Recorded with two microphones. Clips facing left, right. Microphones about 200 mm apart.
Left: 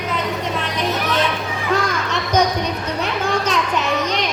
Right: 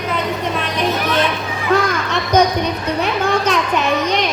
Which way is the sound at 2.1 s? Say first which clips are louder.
Right 4 dB; 60° right (ahead or behind).